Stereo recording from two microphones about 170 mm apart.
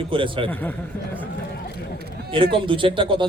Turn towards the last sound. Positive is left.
turn(degrees=-30)  # may be behind; listen again after turning